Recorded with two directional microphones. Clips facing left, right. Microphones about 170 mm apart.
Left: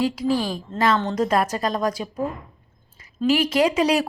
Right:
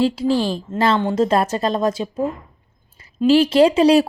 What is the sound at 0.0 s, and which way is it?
A woman's voice, 30° right (ahead or behind).